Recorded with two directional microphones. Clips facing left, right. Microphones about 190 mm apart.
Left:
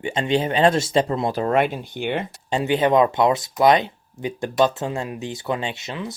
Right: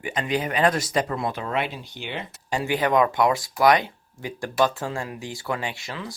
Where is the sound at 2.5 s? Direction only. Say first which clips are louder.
Left 4 dB; 20° left (ahead or behind).